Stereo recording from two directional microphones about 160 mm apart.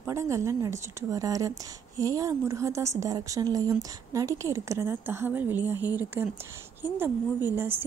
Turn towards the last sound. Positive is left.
turn(degrees=-15)  # may be behind; listen again after turning